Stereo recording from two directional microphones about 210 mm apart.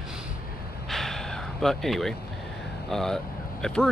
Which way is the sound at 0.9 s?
Centre (ahead or behind).